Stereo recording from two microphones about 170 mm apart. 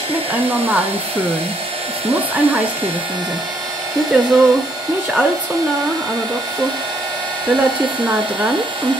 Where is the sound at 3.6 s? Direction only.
25° right (ahead or behind).